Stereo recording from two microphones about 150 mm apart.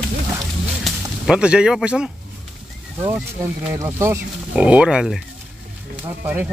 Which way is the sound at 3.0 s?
20° right (ahead or behind).